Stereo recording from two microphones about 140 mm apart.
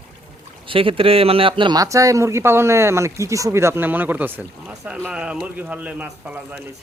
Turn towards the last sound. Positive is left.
turn(degrees=-10)  # may be behind; listen again after turning